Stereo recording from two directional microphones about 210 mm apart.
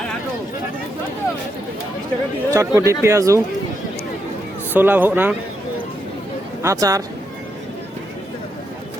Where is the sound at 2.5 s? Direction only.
15° right (ahead or behind).